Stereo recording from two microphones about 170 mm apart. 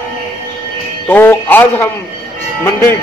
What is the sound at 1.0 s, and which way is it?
Speech, 10° left (ahead or behind).